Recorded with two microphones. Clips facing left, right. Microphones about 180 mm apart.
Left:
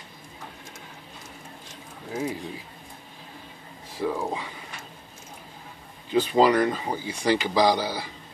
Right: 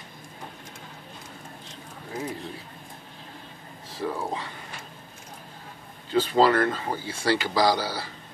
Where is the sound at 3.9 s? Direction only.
10° left (ahead or behind).